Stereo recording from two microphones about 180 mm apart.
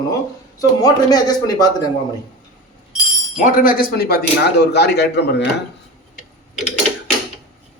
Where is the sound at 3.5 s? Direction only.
50° left (ahead or behind); by 5.5 s 65° left (ahead or behind).